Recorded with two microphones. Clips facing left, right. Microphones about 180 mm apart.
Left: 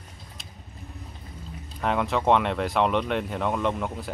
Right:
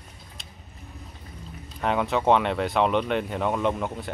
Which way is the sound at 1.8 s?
Centre (ahead or behind).